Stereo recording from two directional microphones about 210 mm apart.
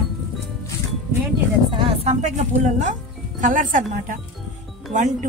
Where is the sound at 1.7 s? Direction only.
25° right (ahead or behind).